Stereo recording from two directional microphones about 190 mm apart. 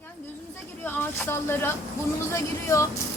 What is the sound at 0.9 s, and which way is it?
Speech, 10° left (ahead or behind).